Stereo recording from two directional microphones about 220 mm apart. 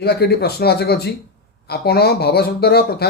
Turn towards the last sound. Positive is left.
turn(degrees=45)  # may be behind; listen again after turning